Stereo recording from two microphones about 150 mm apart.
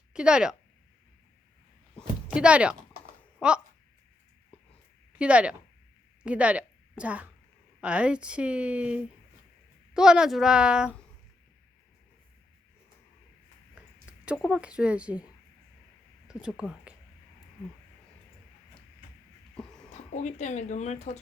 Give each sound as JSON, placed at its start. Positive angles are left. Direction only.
{"t": 0.1, "sound": "speech", "side_deg": -5}
{"t": 2.3, "sound": "a woman's voice", "side_deg": -5}
{"t": 5.1, "sound": "a woman's voice", "side_deg": -10}
{"t": 14.3, "sound": "speech", "side_deg": -5}
{"t": 16.2, "sound": "speech", "side_deg": -5}
{"t": 19.5, "sound": "music", "side_deg": 5}
{"t": 19.9, "sound": "a woman's voice", "side_deg": 50}